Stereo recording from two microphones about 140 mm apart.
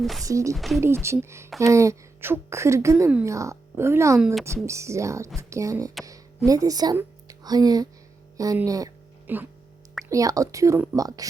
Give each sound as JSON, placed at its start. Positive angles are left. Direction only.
{"t": 0.0, "sound": "speech", "side_deg": 0}
{"t": 0.3, "sound": "a woman's voice", "side_deg": -20}
{"t": 0.5, "sound": "speech", "side_deg": 0}
{"t": 0.8, "sound": "a woman's voice", "side_deg": -20}
{"t": 9.2, "sound": "speech", "side_deg": -15}
{"t": 10.1, "sound": "a woman's voice", "side_deg": -25}